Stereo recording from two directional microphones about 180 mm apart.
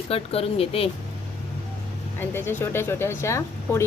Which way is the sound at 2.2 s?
10° left (ahead or behind).